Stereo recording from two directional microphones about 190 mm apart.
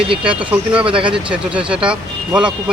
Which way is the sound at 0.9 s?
30° right (ahead or behind).